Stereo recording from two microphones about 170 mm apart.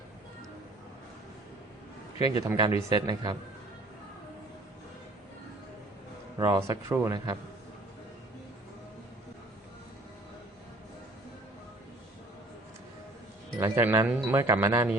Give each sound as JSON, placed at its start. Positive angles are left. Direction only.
{"t": 2.1, "sound": "a man's voice", "side_deg": 35}
{"t": 2.5, "sound": "speech", "side_deg": -20}
{"t": 6.4, "sound": "speech", "side_deg": -20}
{"t": 13.6, "sound": "speech", "side_deg": -15}